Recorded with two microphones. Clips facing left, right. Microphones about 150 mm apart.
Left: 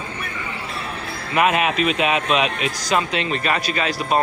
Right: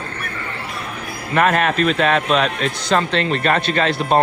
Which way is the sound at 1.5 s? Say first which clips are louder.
Right 2 dB; 5° left (ahead or behind).